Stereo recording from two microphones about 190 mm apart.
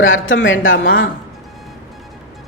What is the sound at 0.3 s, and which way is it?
Speech, 90° left.